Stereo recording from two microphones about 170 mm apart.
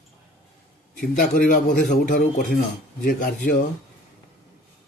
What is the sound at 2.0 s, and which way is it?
Speech, 60° left (ahead or behind).